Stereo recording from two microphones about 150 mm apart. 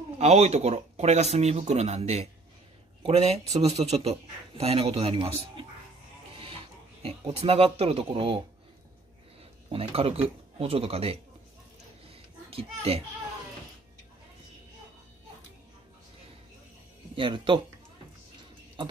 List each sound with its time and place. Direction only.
0.2 s a man's voice: 45° right (ahead or behind)
7.3 s a man's voice: 40° right (ahead or behind)
9.7 s a man's voice: 40° right (ahead or behind)
12.1 s a sound: 40° right (ahead or behind)
17.1 s speech: 35° right (ahead or behind)